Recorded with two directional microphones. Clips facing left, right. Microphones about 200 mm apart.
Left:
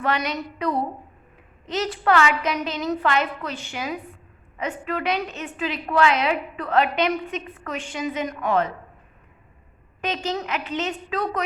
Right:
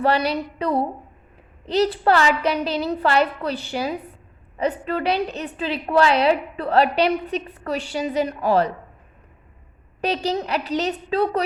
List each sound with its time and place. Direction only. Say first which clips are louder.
0.0 s a woman's voice: right 5 dB; 35° right (ahead or behind)
10.0 s a woman's voice: right 4 dB; 35° right (ahead or behind)